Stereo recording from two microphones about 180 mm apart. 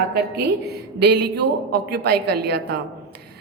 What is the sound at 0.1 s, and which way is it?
Speech, 65° right (ahead or behind).